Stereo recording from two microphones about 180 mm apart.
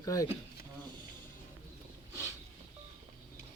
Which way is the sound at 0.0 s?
20° left (ahead or behind).